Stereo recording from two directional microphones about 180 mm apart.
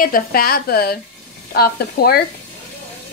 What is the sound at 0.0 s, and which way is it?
A woman's voice, 55° left (ahead or behind).